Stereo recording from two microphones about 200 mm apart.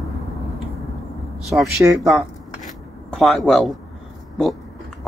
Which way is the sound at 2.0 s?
Centre (ahead or behind).